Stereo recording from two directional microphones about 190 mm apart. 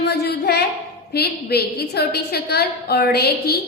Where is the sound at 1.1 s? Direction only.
55° left (ahead or behind).